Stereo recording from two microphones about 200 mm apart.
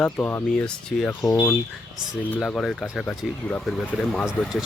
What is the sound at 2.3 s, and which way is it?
Speech, 5° left (ahead or behind).